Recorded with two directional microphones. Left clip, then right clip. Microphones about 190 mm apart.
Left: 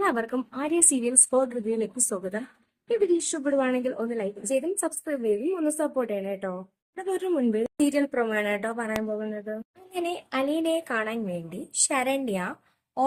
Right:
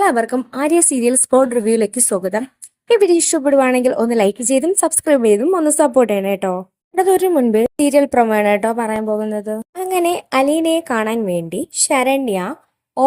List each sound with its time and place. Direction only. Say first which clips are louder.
0.0 s a woman's voice: right 11 dB; 30° right (ahead or behind)
4.2 s a woman's voice: right 10 dB; 40° right (ahead or behind)